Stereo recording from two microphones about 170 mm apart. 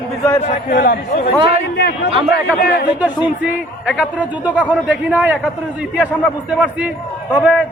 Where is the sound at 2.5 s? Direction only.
65° left (ahead or behind).